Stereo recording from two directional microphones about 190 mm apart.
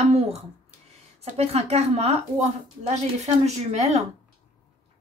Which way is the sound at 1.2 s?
35° right (ahead or behind).